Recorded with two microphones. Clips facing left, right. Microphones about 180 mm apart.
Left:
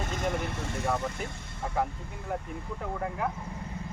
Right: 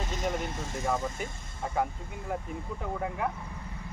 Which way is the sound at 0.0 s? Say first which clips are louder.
Left 1 dB; 55° left (ahead or behind).